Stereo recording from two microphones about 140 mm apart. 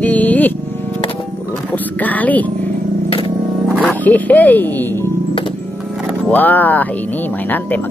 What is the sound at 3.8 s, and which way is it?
Speech, 10° left (ahead or behind).